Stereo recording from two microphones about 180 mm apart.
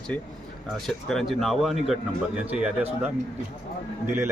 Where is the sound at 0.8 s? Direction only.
Centre (ahead or behind).